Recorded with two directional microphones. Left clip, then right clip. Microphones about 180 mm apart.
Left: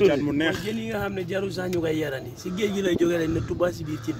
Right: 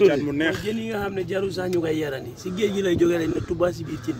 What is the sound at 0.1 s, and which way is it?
Speech, 40° left (ahead or behind).